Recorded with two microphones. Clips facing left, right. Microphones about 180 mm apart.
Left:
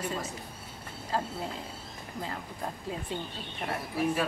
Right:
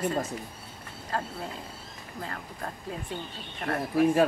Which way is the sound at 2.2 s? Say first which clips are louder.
Even; 15° left (ahead or behind).